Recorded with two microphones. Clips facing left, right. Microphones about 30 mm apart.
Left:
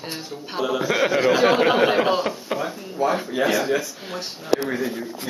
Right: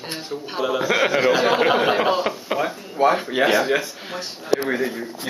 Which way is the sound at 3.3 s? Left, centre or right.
Right.